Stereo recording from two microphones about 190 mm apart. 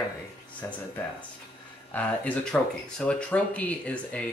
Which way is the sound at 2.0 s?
5° left (ahead or behind).